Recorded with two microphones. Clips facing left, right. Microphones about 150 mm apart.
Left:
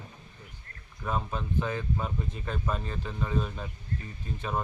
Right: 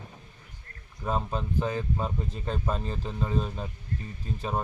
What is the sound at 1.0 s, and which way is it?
Speech, 30° right (ahead or behind).